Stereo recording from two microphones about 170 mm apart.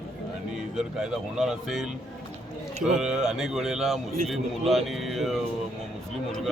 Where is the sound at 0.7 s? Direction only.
Centre (ahead or behind).